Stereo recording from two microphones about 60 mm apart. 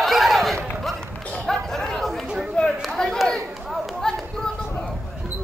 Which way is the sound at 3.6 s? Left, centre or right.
Centre.